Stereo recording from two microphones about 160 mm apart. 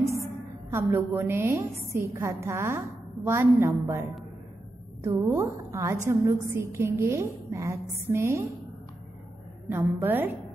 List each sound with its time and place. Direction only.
0.7 s a woman's voice: 15° right (ahead or behind)
5.0 s a woman's voice: 15° right (ahead or behind)
9.7 s a woman's voice: 15° right (ahead or behind)